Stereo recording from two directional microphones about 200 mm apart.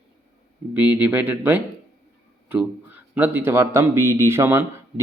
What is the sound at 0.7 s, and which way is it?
A man's voice, 5° right (ahead or behind).